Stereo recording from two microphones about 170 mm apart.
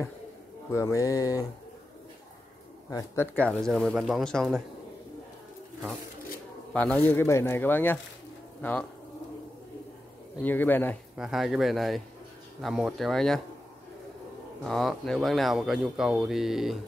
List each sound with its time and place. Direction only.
0.7 s speech: 20° left (ahead or behind)
2.9 s speech: 15° left (ahead or behind); by 4.6 s centre (ahead or behind)
6.7 s speech: 10° left (ahead or behind)
10.4 s speech: 10° left (ahead or behind)
11.1 s speech: centre (ahead or behind)
14.6 s speech: centre (ahead or behind)